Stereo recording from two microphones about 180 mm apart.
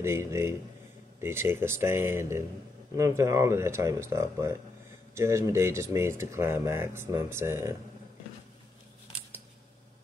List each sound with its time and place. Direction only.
0.0 s speech: 15° right (ahead or behind)